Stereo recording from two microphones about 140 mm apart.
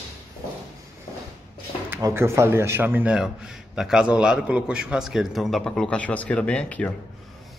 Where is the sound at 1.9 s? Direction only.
20° right (ahead or behind); by 6.9 s 10° left (ahead or behind).